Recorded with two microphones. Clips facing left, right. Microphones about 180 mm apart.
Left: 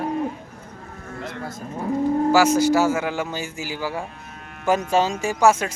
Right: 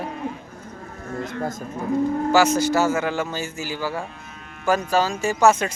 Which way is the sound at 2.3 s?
10° left (ahead or behind).